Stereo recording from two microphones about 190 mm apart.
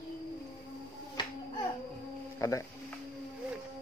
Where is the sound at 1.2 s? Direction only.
25° left (ahead or behind).